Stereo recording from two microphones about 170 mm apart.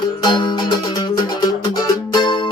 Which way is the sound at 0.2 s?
25° left (ahead or behind).